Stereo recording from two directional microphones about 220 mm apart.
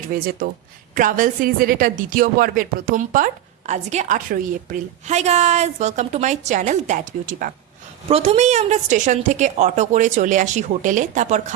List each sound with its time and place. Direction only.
0.1 s a woman's voice: 40° right (ahead or behind)